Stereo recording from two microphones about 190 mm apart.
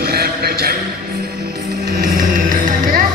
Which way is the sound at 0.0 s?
55° right (ahead or behind).